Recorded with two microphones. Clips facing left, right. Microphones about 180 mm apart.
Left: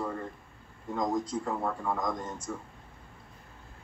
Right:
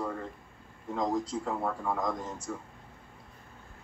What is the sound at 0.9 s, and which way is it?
A man's voice, 5° right (ahead or behind).